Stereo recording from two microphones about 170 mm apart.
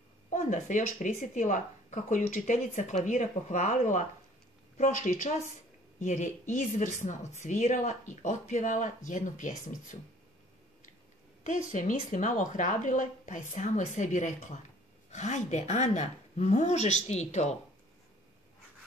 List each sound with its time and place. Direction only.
0.3 s speech: 45° left (ahead or behind)
11.4 s a woman's voice: 50° left (ahead or behind)